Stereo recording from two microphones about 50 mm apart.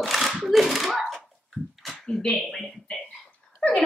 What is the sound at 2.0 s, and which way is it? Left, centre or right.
Speech, centre.